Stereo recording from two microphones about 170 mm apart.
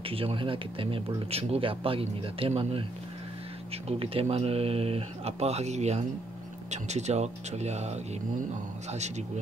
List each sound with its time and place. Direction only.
0.0 s speech: 35° right (ahead or behind)